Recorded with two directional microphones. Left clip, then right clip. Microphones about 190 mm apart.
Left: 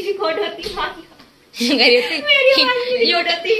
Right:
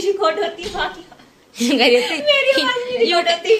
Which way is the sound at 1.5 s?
15° right (ahead or behind).